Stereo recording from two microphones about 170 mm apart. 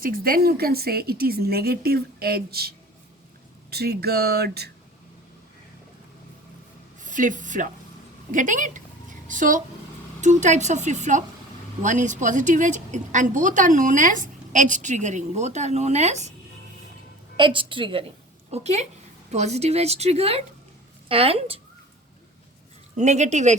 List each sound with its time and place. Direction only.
0.0 s speech: 60° right (ahead or behind)
7.0 s a woman's voice: 50° right (ahead or behind)
17.3 s a woman's voice: 30° right (ahead or behind)
18.5 s a woman's voice: 40° right (ahead or behind)
23.0 s a woman's voice: 45° right (ahead or behind)